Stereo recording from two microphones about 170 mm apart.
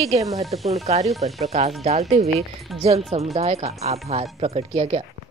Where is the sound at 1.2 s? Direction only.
40° right (ahead or behind).